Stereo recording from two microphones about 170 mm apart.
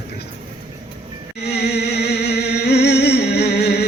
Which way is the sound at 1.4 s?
75° left (ahead or behind).